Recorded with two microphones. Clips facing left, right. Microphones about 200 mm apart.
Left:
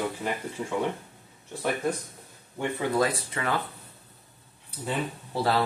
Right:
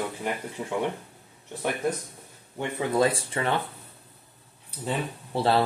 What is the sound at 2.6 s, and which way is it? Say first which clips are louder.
Speech: right 1 dB; 25° right (ahead or behind).